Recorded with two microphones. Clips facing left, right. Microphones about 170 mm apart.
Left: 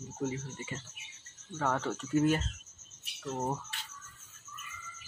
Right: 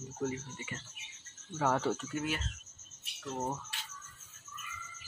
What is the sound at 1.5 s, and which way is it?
Speech, 5° right (ahead or behind).